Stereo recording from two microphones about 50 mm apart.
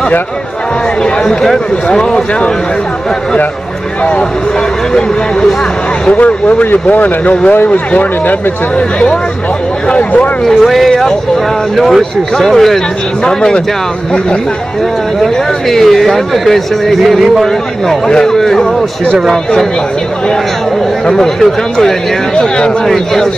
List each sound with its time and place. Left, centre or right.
1.2 s speech: centre
6.0 s speech: left
9.8 s speech: left
10.4 s speech: centre
15.7 s speech: centre
21.1 s speech: centre